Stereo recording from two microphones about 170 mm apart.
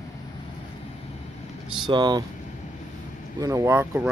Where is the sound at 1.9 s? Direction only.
25° right (ahead or behind).